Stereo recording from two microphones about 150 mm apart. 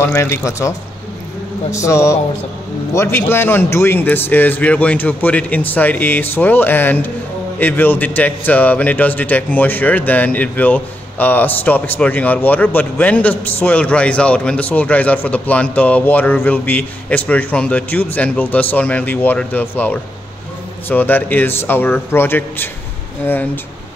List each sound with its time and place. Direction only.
0.0 s a man's voice: 15° left (ahead or behind)